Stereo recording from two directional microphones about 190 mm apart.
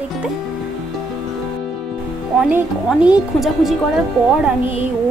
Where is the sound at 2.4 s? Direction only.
5° right (ahead or behind).